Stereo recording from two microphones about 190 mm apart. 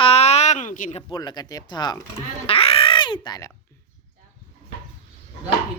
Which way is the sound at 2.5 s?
30° left (ahead or behind).